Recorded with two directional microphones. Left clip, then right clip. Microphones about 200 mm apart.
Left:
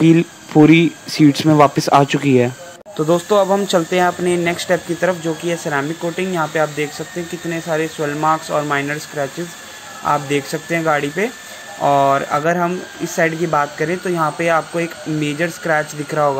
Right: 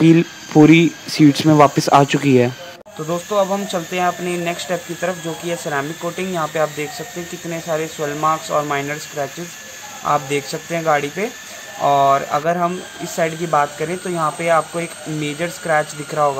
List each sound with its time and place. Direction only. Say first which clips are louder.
0.0 s speech: even; centre (ahead or behind)
3.1 s speech: left 4 dB; 30° left (ahead or behind); by 16.3 s 10° left (ahead or behind)